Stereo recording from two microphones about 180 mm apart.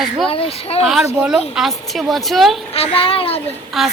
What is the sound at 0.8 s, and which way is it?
Speech, 5° right (ahead or behind).